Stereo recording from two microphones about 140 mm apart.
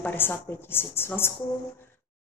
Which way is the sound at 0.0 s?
15° left (ahead or behind).